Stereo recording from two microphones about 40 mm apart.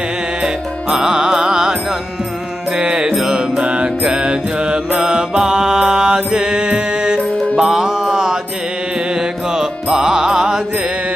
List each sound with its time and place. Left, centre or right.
0.4 s music: centre
3.3 s mantra: right
5.9 s music: centre